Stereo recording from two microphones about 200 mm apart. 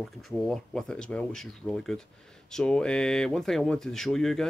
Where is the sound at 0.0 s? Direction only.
Centre (ahead or behind).